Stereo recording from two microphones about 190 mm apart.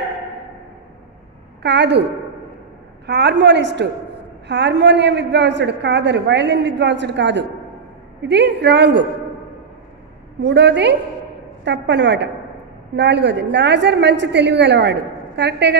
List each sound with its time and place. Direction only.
1.6 s a woman's voice: 65° right (ahead or behind)
3.1 s a woman's voice: 65° right (ahead or behind)
10.4 s a woman's voice: 65° right (ahead or behind)